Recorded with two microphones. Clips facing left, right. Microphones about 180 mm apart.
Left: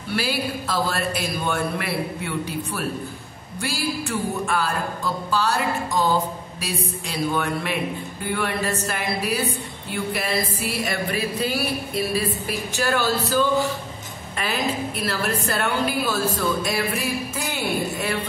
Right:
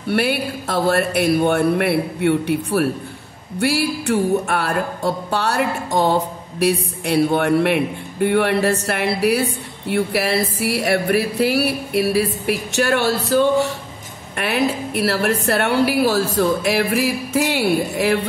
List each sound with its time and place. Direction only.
0.1 s speech: 60° right (ahead or behind)
3.5 s music: 65° right (ahead or behind)